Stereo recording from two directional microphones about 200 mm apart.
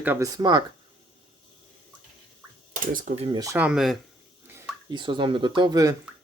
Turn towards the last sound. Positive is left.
turn(degrees=-15)  # may be behind; listen again after turning